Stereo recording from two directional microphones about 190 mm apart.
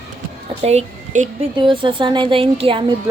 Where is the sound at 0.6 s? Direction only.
35° right (ahead or behind).